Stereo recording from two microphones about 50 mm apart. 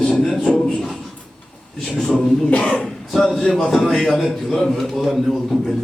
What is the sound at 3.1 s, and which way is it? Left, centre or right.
A man's voice, centre.